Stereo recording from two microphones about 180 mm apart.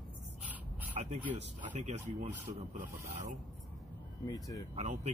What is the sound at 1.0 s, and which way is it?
Speech, 35° right (ahead or behind).